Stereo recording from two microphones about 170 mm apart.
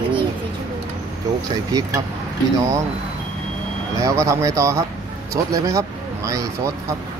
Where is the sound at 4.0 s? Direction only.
20° right (ahead or behind).